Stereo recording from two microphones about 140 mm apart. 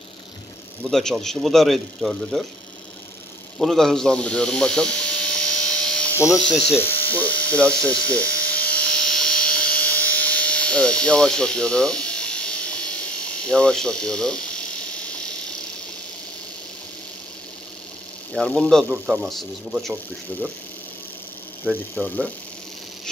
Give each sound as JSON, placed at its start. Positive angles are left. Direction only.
{"t": 0.8, "sound": "speech", "side_deg": 5}
{"t": 3.5, "sound": "electric shaver", "side_deg": 0}
{"t": 6.1, "sound": "speech", "side_deg": 20}
{"t": 6.4, "sound": "speech", "side_deg": 5}
{"t": 6.7, "sound": "a sound", "side_deg": 15}
{"t": 18.3, "sound": "speech", "side_deg": 10}
{"t": 18.9, "sound": "a man's voice", "side_deg": -5}
{"t": 21.9, "sound": "speech", "side_deg": 10}